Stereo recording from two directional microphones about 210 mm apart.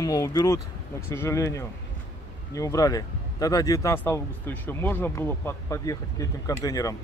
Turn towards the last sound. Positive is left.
turn(degrees=15)  # may be behind; listen again after turning